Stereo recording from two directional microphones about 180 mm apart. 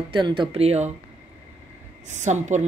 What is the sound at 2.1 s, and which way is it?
Speech, 40° right (ahead or behind).